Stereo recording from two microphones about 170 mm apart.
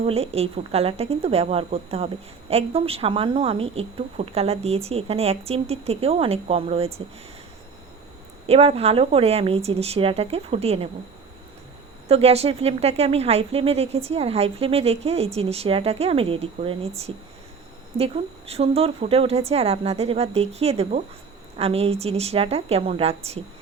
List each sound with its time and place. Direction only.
0.0 s speech: 35° right (ahead or behind)
8.4 s speech: 35° right (ahead or behind)
12.0 s speech: 35° right (ahead or behind)
17.9 s speech: 35° right (ahead or behind)